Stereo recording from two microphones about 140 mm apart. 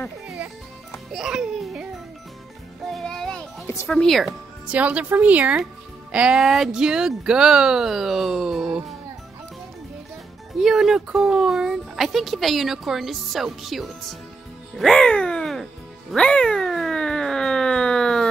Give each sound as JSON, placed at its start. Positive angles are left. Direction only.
{"t": 0.9, "sound": "music", "side_deg": -5}
{"t": 2.8, "sound": "child singing", "side_deg": 0}
{"t": 3.6, "sound": "music", "side_deg": 20}
{"t": 3.9, "sound": "a woman's voice", "side_deg": 5}
{"t": 10.6, "sound": "speech", "side_deg": 0}
{"t": 16.1, "sound": "cat", "side_deg": 5}